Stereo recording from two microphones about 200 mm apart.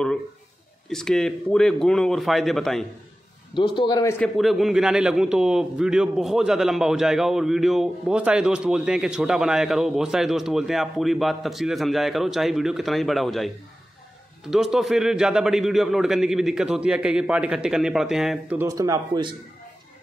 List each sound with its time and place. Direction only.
0.8 s a man's voice: 5° left (ahead or behind)
3.5 s a man's voice: 25° left (ahead or behind)
4.2 s a man's voice: centre (ahead or behind)
14.5 s a man's voice: centre (ahead or behind); by 19.3 s 20° right (ahead or behind)